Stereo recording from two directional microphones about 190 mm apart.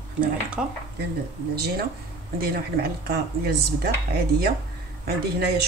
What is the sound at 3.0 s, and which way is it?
Speech, 55° right (ahead or behind).